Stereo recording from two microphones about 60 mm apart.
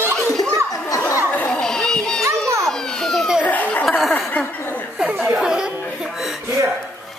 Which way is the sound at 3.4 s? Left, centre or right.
Left.